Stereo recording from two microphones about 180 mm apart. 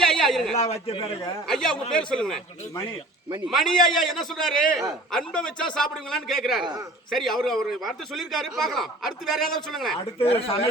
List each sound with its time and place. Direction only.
0.0 s a sound: centre (ahead or behind)
0.5 s a man's voice: 35° left (ahead or behind)
1.5 s a man's voice: 5° left (ahead or behind)
3.4 s a man's voice: centre (ahead or behind)
10.2 s a man's voice: 30° left (ahead or behind)